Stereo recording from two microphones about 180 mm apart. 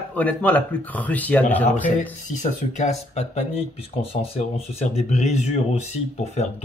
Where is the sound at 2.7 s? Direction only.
40° left (ahead or behind).